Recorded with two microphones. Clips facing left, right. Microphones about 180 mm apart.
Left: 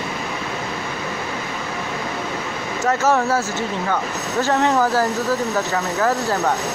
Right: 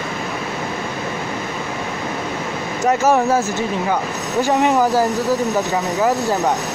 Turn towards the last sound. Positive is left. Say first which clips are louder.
# right 2 dB
turn(degrees=-15)  # may be behind; listen again after turning